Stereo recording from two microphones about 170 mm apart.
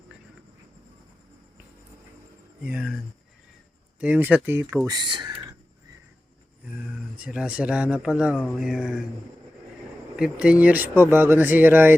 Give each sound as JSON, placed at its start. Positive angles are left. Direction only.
{"t": 2.6, "sound": "speech", "side_deg": -5}
{"t": 4.0, "sound": "speech", "side_deg": -10}
{"t": 4.9, "sound": "speech", "side_deg": -25}
{"t": 6.9, "sound": "speech", "side_deg": -5}
{"t": 10.2, "sound": "speech", "side_deg": -5}